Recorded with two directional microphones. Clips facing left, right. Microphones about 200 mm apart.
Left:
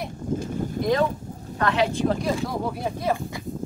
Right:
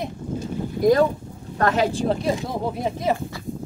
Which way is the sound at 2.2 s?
25° right (ahead or behind).